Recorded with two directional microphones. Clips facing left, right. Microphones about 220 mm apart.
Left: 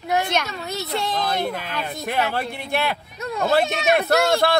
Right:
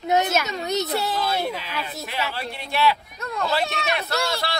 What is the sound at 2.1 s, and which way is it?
A man's voice, 55° left (ahead or behind).